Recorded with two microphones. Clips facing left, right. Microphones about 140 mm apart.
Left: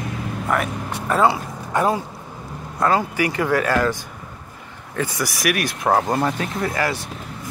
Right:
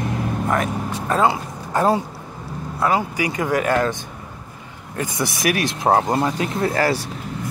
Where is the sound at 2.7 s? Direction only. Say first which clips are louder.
Left 1 dB; 15° right (ahead or behind); by 7.0 s 35° right (ahead or behind).